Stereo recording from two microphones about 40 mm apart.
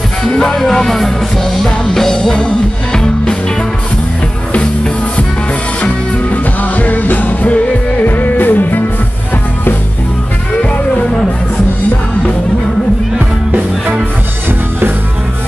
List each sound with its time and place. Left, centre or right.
0.3 s music: centre
6.3 s music: left